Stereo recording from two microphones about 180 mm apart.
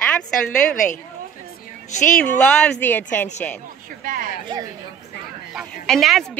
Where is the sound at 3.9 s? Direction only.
50° right (ahead or behind).